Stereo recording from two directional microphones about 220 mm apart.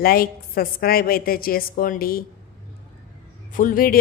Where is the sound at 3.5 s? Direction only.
40° left (ahead or behind).